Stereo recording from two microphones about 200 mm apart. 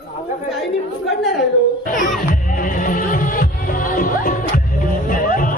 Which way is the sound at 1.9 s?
40° left (ahead or behind).